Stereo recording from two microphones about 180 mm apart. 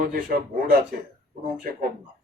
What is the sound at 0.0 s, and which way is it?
Speech, 55° right (ahead or behind).